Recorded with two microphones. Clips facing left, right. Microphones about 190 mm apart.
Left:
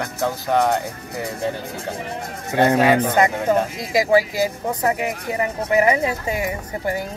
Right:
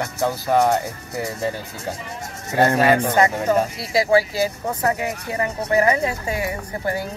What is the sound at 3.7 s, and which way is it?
A man's voice, 15° left (ahead or behind).